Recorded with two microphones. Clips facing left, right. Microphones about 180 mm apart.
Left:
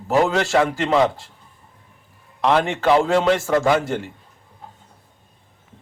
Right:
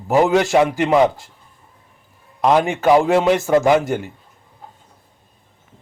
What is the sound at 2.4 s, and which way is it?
A man's voice, 15° right (ahead or behind).